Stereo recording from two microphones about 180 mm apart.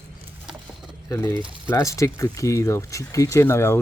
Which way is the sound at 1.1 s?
15° left (ahead or behind).